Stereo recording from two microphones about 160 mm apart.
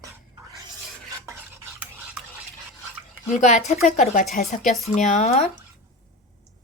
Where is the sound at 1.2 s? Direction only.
15° right (ahead or behind).